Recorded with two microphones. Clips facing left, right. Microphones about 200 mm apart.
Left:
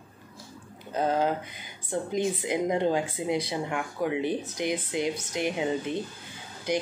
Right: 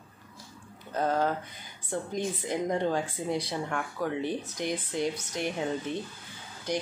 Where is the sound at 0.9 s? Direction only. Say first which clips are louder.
Left 2 dB; 15° left (ahead or behind).